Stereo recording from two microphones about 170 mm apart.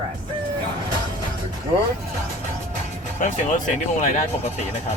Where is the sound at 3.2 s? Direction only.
50° left (ahead or behind).